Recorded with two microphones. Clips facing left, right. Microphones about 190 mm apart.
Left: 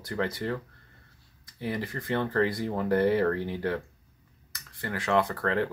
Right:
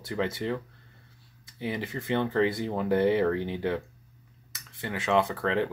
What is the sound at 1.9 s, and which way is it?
Speech, 5° right (ahead or behind).